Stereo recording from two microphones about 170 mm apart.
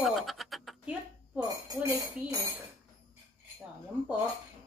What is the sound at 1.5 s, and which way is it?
Speech, 20° right (ahead or behind).